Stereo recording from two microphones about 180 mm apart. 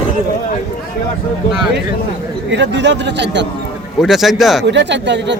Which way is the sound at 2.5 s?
80° right.